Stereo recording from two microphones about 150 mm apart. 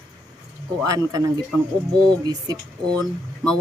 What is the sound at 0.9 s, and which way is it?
Speech, 25° right (ahead or behind).